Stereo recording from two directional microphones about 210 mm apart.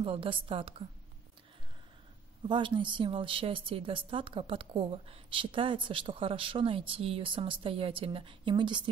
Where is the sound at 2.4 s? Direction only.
25° right (ahead or behind).